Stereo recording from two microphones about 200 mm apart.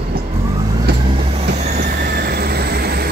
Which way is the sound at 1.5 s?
45° right (ahead or behind).